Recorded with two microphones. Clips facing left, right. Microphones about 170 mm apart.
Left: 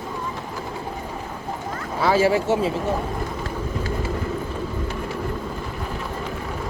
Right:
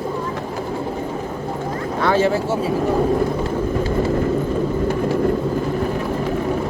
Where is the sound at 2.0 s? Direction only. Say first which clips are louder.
Right 1 dB; 5° left (ahead or behind).